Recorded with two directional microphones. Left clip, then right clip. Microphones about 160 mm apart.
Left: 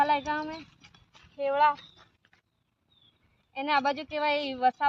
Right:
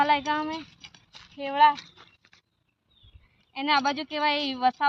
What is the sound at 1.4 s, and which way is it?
Speech, 20° left (ahead or behind).